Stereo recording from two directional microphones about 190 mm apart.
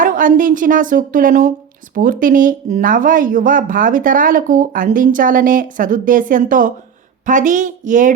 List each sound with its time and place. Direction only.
0.0 s speech: 45° right (ahead or behind)